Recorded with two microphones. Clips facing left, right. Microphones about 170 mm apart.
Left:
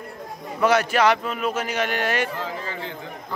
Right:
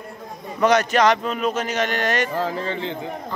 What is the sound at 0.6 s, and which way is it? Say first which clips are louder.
A man's voice: right 2 dB; 5° left (ahead or behind).